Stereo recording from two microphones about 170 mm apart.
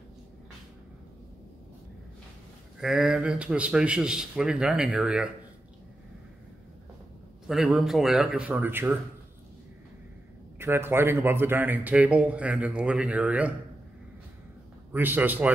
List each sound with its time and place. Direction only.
2.8 s speech: 5° right (ahead or behind)
7.4 s speech: centre (ahead or behind)
10.6 s a man's voice: 15° right (ahead or behind)
14.9 s a man's voice: 10° right (ahead or behind)